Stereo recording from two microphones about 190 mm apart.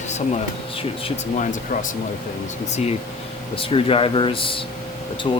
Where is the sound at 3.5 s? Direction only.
30° left (ahead or behind).